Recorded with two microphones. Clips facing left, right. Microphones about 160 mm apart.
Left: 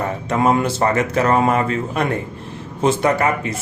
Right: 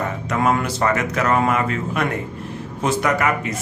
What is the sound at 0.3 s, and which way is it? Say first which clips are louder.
A man's voice: left 3 dB; 25° left (ahead or behind).